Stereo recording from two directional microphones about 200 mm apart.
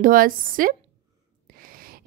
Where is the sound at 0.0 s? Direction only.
45° right (ahead or behind).